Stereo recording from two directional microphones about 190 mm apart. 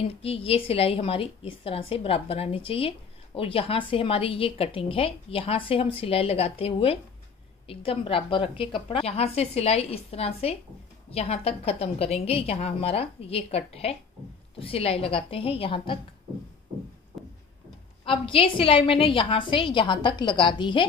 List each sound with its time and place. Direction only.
0.0 s a woman's voice: 30° left (ahead or behind)
18.0 s a woman's voice: 30° left (ahead or behind)